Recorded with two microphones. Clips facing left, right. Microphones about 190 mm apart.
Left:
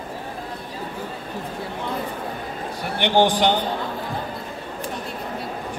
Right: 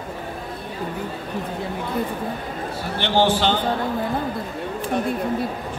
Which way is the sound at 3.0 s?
15° left (ahead or behind).